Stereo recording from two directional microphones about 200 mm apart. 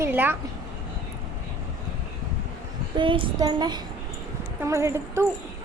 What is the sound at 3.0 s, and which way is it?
Child singing, 25° right (ahead or behind).